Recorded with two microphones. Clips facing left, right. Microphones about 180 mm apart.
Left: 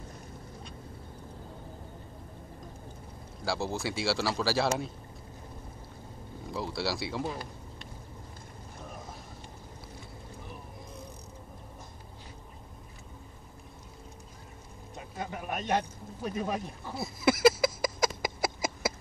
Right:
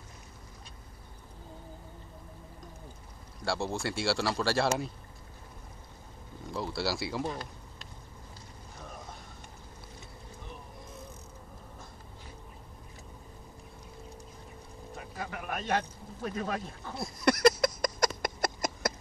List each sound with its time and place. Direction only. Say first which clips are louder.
3.4 s a man's voice: even; centre (ahead or behind)
6.5 s speech: even; centre (ahead or behind)
15.1 s a man's voice: left 2 dB; 25° left (ahead or behind)
16.9 s a sound: left 1 dB; 5° left (ahead or behind)